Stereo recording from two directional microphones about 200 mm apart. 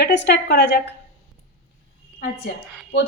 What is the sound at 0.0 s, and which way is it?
Speech, 60° left (ahead or behind).